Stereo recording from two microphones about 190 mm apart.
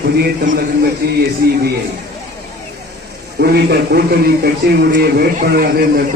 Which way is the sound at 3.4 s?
55° right (ahead or behind).